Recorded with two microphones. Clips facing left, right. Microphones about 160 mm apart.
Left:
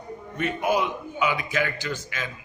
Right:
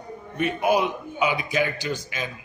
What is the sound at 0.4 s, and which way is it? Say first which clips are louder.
A man's voice: right 3 dB; 15° right (ahead or behind).